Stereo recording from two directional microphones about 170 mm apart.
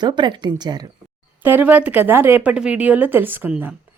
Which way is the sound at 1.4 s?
10° right (ahead or behind).